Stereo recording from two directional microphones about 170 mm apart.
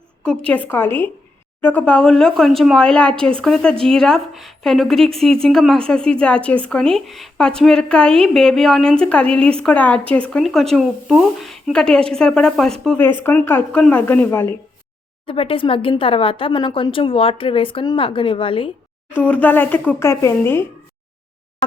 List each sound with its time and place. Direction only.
0.2 s a woman's voice: 10° left (ahead or behind)
15.3 s speech: 30° left (ahead or behind)
19.1 s speech: 10° left (ahead or behind)